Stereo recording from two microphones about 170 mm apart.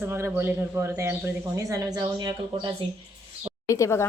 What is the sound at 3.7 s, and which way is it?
Speech, 15° left (ahead or behind).